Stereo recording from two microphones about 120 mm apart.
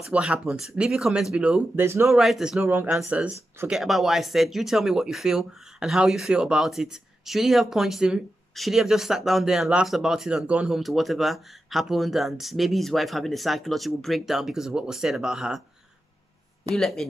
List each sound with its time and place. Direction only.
0.1 s speech: 5° right (ahead or behind)
1.8 s speech: 20° right (ahead or behind)
2.0 s speech: centre (ahead or behind)
2.6 s speech: 15° right (ahead or behind)
16.7 s speech: centre (ahead or behind)